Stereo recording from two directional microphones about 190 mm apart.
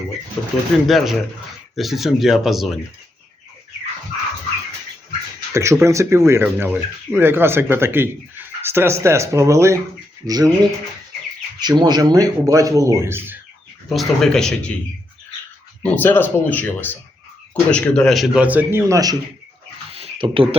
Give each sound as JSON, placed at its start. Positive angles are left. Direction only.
{"t": 0.9, "sound": "a man's voice", "side_deg": 0}
{"t": 5.5, "sound": "speech", "side_deg": -15}
{"t": 13.9, "sound": "a man's voice", "side_deg": 0}
{"t": 15.8, "sound": "a man's voice", "side_deg": 10}
{"t": 19.9, "sound": "a sound", "side_deg": -30}